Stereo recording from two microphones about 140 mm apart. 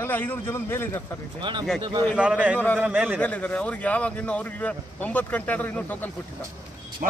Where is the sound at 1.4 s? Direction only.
35° right (ahead or behind).